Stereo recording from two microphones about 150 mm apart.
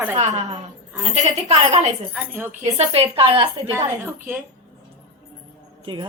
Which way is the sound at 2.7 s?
40° right (ahead or behind).